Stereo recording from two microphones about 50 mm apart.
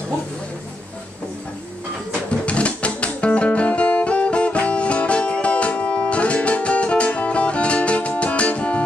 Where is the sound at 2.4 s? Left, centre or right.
Left.